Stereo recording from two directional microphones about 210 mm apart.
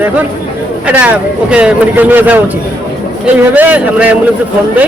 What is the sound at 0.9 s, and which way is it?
Speech, 5° right (ahead or behind).